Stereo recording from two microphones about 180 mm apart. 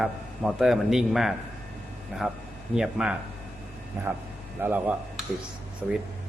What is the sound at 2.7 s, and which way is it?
Speech, 5° right (ahead or behind).